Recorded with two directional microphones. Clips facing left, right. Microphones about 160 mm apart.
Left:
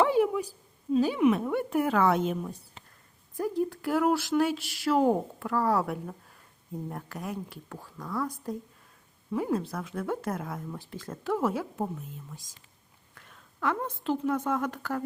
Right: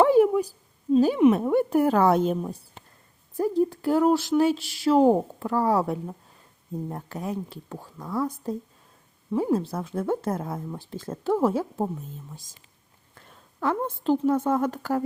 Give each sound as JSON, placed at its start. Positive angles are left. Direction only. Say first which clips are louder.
{"t": 0.0, "sound": "a sound", "louder": "right 6 dB", "side_deg": -45}
{"t": 0.9, "sound": "a woman's voice", "louder": "right 5 dB", "side_deg": -40}
{"t": 13.1, "sound": "a woman's voice", "louder": "right 4 dB", "side_deg": -30}